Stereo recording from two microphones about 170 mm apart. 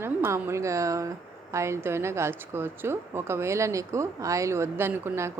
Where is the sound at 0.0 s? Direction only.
15° right (ahead or behind).